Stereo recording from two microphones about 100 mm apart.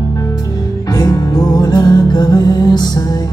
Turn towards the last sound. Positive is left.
turn(degrees=45)  # may be behind; listen again after turning